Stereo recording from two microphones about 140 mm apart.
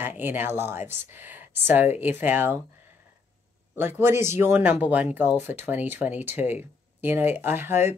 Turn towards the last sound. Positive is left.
turn(degrees=-15)  # may be behind; listen again after turning